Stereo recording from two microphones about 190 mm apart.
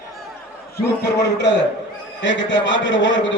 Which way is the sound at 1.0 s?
65° left (ahead or behind).